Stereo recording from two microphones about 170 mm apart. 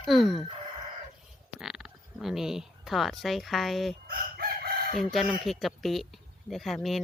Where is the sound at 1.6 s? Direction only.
Centre (ahead or behind).